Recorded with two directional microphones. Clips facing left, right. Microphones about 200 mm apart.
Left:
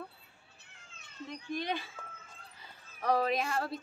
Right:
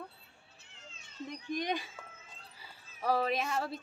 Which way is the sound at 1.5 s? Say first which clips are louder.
Right 1 dB; 15° right (ahead or behind).